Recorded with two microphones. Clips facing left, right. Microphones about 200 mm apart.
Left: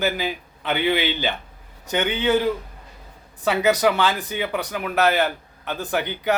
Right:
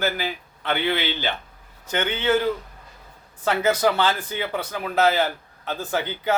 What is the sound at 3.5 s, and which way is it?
Speech, 15° left (ahead or behind).